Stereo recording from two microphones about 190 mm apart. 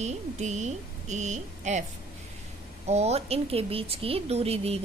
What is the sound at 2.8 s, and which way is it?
A woman's voice, 35° right (ahead or behind).